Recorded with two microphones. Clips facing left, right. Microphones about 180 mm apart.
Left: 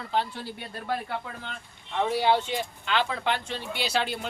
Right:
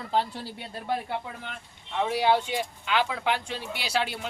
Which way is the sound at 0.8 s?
20° right (ahead or behind).